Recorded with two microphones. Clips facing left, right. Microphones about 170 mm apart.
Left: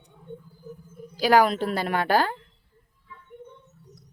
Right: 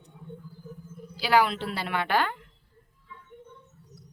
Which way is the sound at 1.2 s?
45° left (ahead or behind).